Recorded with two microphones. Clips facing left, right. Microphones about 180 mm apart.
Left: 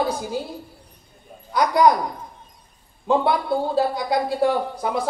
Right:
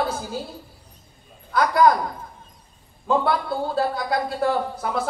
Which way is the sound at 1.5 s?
15° left (ahead or behind).